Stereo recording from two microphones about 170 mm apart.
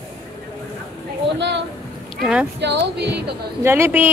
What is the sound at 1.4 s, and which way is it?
Speech, 90° right.